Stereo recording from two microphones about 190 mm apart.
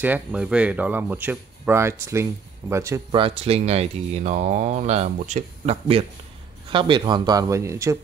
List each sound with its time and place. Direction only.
0.0 s speech: 5° right (ahead or behind)
3.1 s speech: 30° right (ahead or behind)